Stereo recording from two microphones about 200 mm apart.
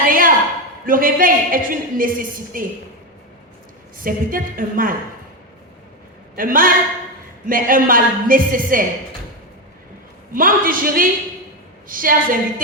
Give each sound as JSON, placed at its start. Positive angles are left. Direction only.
{"t": 0.0, "sound": "a sound", "side_deg": -45}
{"t": 0.9, "sound": "speech", "side_deg": -45}
{"t": 3.9, "sound": "speech", "side_deg": -45}
{"t": 6.3, "sound": "speech", "side_deg": -45}
{"t": 10.3, "sound": "speech", "side_deg": -45}